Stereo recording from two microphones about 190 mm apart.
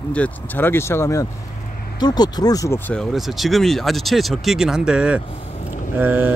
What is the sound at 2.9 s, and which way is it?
Speech, centre (ahead or behind).